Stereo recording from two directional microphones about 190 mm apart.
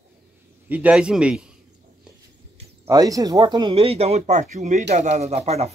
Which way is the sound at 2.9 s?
20° right (ahead or behind).